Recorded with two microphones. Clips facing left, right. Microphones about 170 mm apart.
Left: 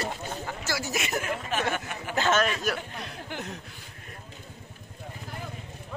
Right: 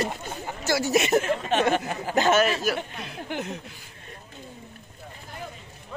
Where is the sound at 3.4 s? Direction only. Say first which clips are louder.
Right 5 dB; centre (ahead or behind).